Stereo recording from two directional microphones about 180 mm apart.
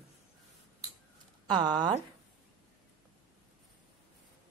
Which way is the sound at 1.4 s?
25° right (ahead or behind).